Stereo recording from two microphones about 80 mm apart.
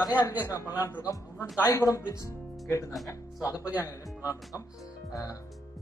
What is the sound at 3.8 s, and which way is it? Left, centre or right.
Speech, left.